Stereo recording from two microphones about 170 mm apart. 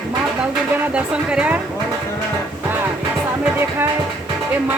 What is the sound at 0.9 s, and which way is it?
Speech, 5° right (ahead or behind).